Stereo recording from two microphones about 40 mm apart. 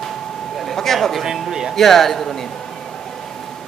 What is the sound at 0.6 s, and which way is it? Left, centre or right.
Speech, centre.